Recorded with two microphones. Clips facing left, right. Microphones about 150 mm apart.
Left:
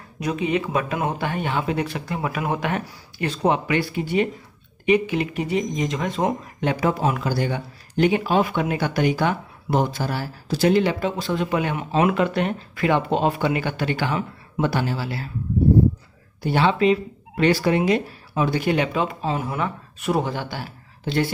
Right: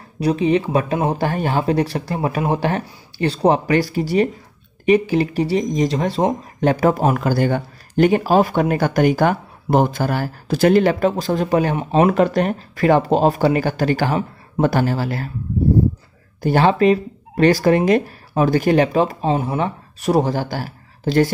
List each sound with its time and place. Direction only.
0.2 s speech: 35° right (ahead or behind)
16.4 s speech: 45° right (ahead or behind)